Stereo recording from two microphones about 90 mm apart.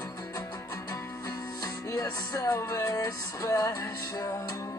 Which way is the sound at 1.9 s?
40° left (ahead or behind).